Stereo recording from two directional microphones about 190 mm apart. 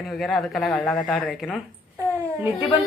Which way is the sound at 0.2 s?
Centre (ahead or behind).